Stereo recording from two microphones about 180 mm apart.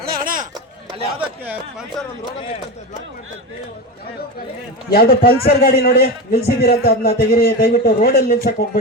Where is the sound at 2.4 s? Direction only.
35° left (ahead or behind).